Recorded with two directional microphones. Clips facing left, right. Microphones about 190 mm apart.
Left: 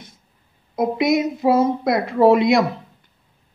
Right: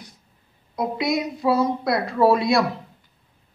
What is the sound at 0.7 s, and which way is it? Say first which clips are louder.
A woman's voice: left 5 dB; 25° left (ahead or behind).